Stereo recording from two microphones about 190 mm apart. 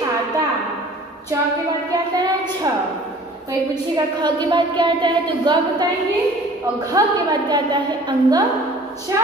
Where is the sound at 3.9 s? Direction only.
25° right (ahead or behind).